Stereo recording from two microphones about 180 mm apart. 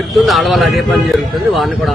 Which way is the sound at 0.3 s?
Centre (ahead or behind).